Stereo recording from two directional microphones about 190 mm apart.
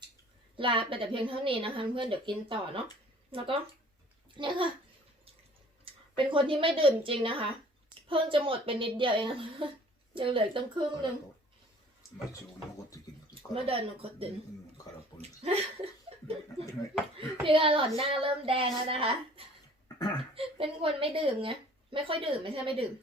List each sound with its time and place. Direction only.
0.5 s a woman's voice: 25° right (ahead or behind)
5.8 s a woman's voice: 25° right (ahead or behind)
13.5 s a woman's voice: 30° right (ahead or behind)